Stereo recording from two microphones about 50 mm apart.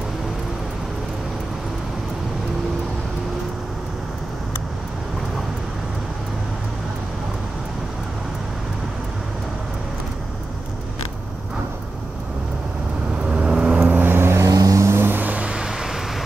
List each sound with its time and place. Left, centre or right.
13.3 s vehicle: right
13.9 s vehicle: right
14.4 s vehicle: right
15.0 s music: right
15.3 s vehicle: centre